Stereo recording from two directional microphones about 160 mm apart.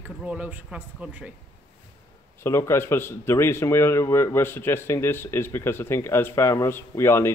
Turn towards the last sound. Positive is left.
turn(degrees=15)  # may be behind; listen again after turning